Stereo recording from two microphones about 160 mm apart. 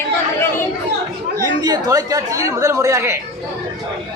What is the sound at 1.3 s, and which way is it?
A woman's voice, 20° right (ahead or behind).